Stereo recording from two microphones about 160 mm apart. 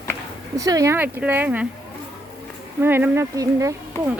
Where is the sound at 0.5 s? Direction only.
20° right (ahead or behind).